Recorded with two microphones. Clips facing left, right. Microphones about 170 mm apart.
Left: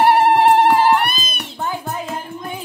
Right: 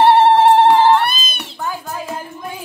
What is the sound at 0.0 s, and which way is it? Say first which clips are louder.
Music: right 2 dB; 25° right (ahead or behind).